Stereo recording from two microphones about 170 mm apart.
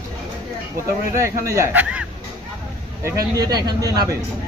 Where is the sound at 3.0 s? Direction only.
20° right (ahead or behind).